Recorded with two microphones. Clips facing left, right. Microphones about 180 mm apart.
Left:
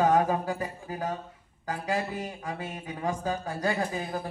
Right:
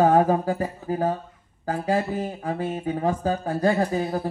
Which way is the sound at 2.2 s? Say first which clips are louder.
Right 8 dB; 50° right (ahead or behind).